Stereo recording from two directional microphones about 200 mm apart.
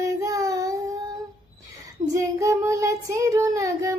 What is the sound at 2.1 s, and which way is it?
Child singing, 15° right (ahead or behind).